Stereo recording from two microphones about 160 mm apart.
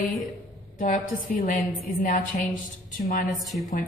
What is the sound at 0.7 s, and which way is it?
A woman's voice, 50° left (ahead or behind).